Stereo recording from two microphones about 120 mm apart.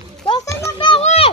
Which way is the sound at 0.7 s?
40° left (ahead or behind).